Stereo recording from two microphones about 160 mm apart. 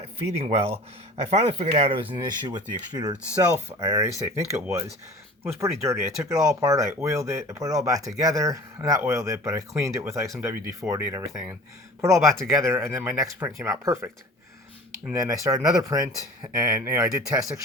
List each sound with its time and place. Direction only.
0.2 s speech: 40° right (ahead or behind)
2.1 s speech: 25° right (ahead or behind)
15.1 s speech: 20° right (ahead or behind)